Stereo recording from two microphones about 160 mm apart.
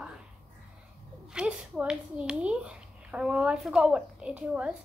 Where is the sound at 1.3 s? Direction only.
5° right (ahead or behind).